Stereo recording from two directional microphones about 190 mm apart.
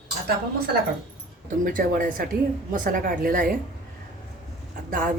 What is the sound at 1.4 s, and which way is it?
Speech, 45° right (ahead or behind).